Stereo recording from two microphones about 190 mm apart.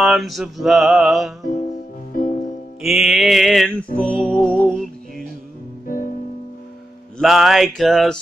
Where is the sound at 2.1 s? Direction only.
50° left (ahead or behind).